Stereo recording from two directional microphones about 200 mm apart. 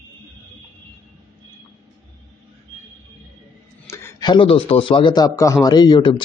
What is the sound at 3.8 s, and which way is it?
A man's voice, 15° left (ahead or behind).